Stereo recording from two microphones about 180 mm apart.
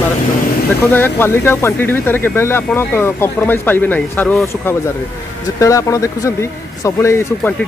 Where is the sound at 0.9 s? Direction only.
10° left (ahead or behind).